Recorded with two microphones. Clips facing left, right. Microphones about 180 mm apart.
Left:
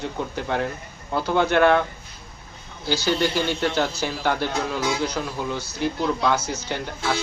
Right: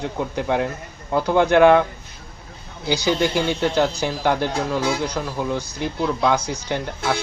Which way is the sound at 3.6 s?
10° right (ahead or behind).